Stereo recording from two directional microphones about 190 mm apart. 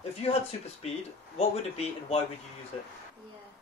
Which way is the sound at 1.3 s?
30° left (ahead or behind).